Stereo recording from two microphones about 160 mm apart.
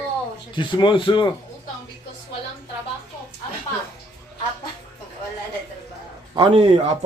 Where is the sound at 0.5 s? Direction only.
30° left (ahead or behind).